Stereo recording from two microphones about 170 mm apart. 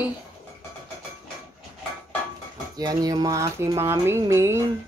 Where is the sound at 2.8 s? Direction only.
25° right (ahead or behind).